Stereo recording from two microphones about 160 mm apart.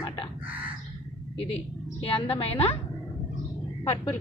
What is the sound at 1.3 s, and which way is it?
A woman's voice, 35° left (ahead or behind).